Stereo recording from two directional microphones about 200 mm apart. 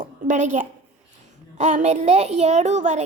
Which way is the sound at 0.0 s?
40° right (ahead or behind).